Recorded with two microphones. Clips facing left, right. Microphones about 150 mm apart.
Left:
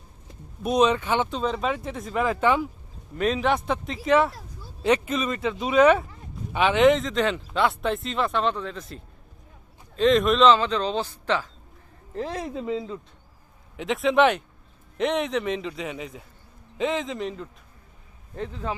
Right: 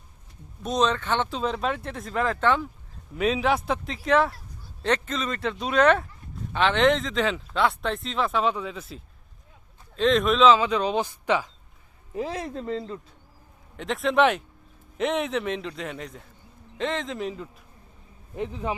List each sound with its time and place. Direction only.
0.6 s speech: 10° left (ahead or behind)
1.3 s speech: centre (ahead or behind)
3.2 s speech: centre (ahead or behind)
18.3 s speech: 15° right (ahead or behind)